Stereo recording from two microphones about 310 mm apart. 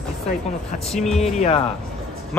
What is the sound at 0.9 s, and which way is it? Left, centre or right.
Speech, centre.